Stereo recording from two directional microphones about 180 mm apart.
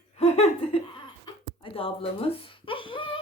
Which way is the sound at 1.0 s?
25° left (ahead or behind).